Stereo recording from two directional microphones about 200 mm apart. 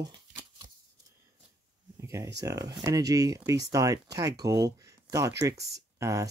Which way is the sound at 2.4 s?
15° right (ahead or behind).